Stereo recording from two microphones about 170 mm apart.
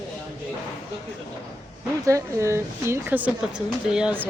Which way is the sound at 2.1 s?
15° right (ahead or behind).